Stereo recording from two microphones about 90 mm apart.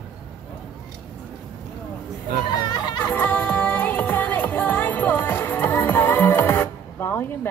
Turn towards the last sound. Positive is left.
turn(degrees=25)  # may be behind; listen again after turning